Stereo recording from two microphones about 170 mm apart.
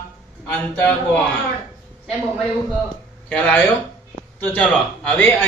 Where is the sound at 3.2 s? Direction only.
10° left (ahead or behind).